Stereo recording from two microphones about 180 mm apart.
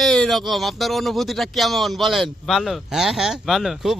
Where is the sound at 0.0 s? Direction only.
Centre (ahead or behind).